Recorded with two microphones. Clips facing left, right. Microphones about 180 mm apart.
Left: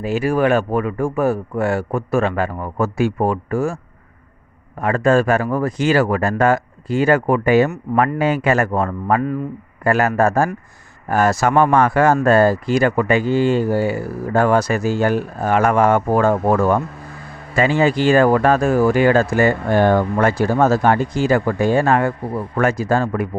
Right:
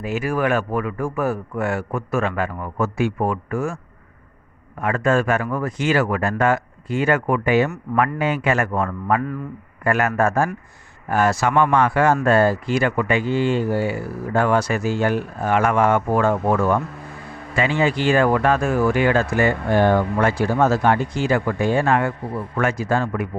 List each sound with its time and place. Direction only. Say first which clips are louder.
0.0 s speech: left 5 dB; 30° left (ahead or behind)
4.8 s speech: left 4 dB; 35° left (ahead or behind)